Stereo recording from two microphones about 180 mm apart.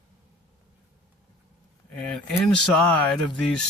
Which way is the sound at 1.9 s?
5° left (ahead or behind).